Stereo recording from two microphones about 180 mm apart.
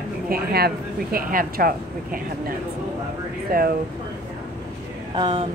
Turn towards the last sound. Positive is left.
turn(degrees=-30)  # may be behind; listen again after turning